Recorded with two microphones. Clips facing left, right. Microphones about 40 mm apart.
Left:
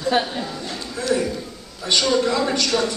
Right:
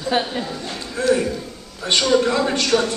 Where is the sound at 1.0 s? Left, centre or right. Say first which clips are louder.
Right 5 dB; right.